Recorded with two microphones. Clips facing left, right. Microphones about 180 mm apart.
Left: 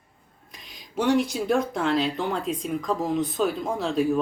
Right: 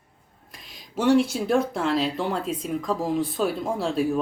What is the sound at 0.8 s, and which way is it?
Speech, 5° right (ahead or behind).